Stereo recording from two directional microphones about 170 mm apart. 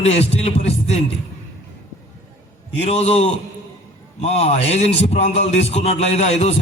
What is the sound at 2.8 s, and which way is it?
A man's voice, 40° left (ahead or behind).